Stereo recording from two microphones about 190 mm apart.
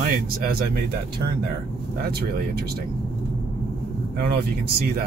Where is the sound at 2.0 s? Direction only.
55° right (ahead or behind).